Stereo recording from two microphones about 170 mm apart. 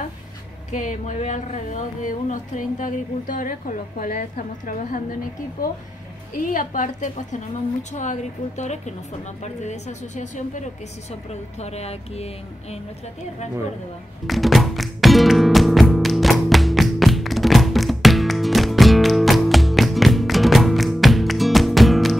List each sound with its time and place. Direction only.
0.7 s speech: 45° left (ahead or behind)
6.3 s speech: 50° left (ahead or behind)
14.2 s music: centre (ahead or behind)